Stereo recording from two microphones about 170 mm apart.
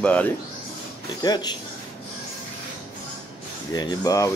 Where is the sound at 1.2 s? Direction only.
25° left (ahead or behind).